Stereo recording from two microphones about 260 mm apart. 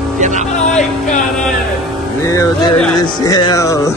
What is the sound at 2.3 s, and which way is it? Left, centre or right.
Music, centre.